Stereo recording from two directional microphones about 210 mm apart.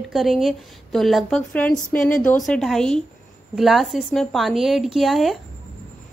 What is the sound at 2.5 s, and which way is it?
A woman's voice, centre (ahead or behind).